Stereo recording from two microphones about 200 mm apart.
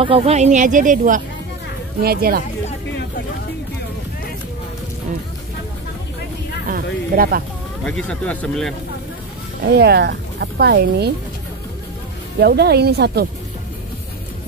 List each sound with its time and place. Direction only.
0.0 s speech: 30° right (ahead or behind); by 2.4 s 50° right (ahead or behind)
6.7 s speech: 50° right (ahead or behind)
7.8 s speech: 5° left (ahead or behind)
9.6 s speech: 55° right (ahead or behind)
12.4 s speech: 55° right (ahead or behind)